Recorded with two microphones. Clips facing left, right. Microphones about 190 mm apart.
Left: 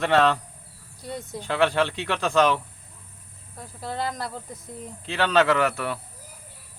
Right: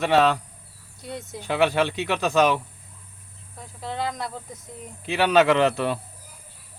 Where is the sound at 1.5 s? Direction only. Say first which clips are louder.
Right 1 dB; 15° right (ahead or behind).